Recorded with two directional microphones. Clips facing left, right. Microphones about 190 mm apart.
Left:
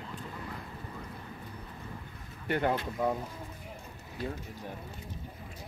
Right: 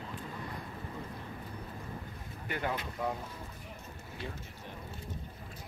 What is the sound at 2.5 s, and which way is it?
Speech, 50° left (ahead or behind).